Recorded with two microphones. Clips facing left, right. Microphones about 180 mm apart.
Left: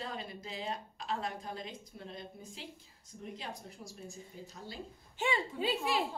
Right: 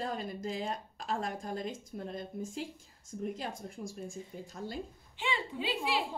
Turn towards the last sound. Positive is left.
turn(degrees=45)  # may be behind; listen again after turning